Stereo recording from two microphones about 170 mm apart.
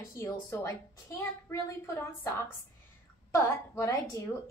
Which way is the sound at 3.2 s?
15° left (ahead or behind).